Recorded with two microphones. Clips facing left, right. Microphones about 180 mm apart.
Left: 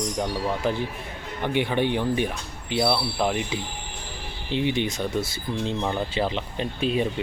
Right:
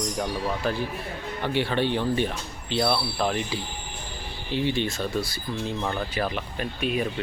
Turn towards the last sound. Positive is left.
turn(degrees=30)  # may be behind; listen again after turning